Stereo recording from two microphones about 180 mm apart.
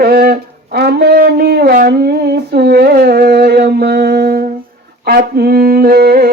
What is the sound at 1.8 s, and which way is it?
Humming, 60° right (ahead or behind).